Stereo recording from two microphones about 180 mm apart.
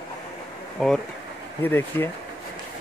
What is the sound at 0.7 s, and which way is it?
Speech, 5° left (ahead or behind).